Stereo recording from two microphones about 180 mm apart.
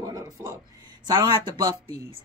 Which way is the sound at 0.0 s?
20° right (ahead or behind).